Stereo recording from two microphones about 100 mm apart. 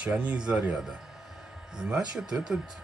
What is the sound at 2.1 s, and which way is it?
Speech, 5° right (ahead or behind).